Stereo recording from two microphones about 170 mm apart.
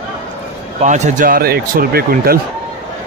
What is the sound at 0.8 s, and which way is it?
Speech, 45° right (ahead or behind).